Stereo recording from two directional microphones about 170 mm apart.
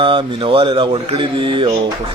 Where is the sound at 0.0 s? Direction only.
30° right (ahead or behind).